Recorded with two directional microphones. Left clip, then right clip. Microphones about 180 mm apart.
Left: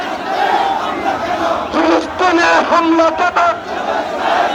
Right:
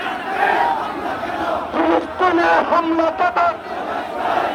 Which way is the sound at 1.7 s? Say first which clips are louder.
Left 2 dB; 65° left (ahead or behind).